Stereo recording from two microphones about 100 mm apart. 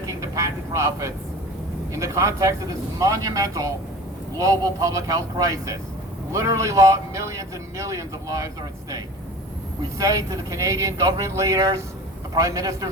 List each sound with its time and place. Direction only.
0.0 s speech: 35° right (ahead or behind)
10.0 s speech: 35° right (ahead or behind)